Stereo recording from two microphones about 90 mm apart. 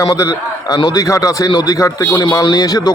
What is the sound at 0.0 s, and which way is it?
Speech, 35° left (ahead or behind).